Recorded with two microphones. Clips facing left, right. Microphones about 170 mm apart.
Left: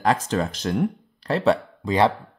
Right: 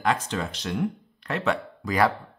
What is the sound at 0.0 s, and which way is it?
Speech, 40° left (ahead or behind).